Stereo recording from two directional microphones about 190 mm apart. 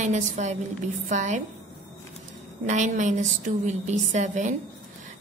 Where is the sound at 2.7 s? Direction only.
40° right (ahead or behind).